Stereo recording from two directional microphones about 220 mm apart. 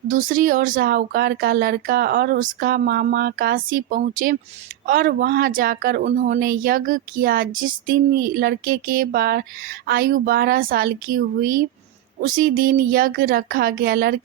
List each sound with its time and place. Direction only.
0.1 s speech: 35° right (ahead or behind)